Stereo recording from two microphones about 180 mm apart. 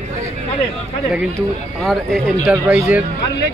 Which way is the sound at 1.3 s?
Centre (ahead or behind).